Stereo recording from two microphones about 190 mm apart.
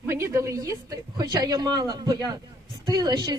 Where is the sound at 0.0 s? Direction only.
15° right (ahead or behind).